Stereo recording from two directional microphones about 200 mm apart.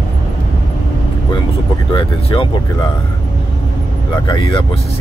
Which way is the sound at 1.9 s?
25° left (ahead or behind).